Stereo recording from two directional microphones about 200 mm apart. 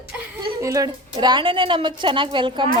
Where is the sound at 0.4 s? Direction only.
15° right (ahead or behind).